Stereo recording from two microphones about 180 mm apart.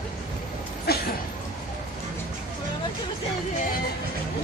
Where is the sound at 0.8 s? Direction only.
60° left (ahead or behind).